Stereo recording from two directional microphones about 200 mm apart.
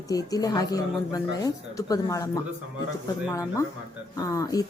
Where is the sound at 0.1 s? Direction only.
20° left (ahead or behind).